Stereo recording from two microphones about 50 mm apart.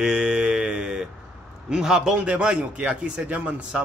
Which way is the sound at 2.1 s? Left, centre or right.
Right.